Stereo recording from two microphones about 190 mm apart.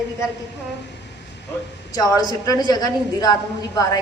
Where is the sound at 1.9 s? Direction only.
20° left (ahead or behind).